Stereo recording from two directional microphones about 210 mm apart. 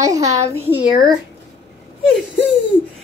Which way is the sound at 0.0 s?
15° right (ahead or behind).